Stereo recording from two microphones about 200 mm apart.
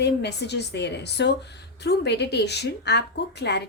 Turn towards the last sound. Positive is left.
turn(degrees=55)  # may be behind; listen again after turning